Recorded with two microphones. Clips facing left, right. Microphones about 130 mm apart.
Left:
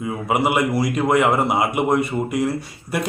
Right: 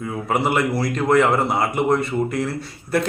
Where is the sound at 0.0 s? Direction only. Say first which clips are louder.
Left 1 dB; 15° left (ahead or behind).